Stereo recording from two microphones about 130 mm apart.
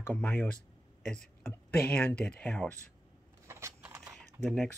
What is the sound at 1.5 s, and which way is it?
Speech, 15° left (ahead or behind).